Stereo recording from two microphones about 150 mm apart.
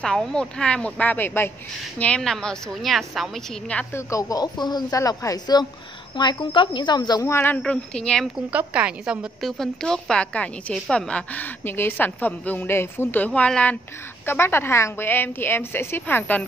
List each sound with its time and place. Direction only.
0.0 s a woman's voice: 5° left (ahead or behind)
4.1 s a woman's voice: 25° left (ahead or behind); by 8.3 s 5° left (ahead or behind)
8.5 s a woman's voice: 10° right (ahead or behind); by 16.4 s 10° left (ahead or behind)